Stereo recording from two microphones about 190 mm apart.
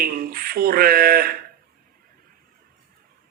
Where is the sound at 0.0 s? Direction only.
50° right (ahead or behind).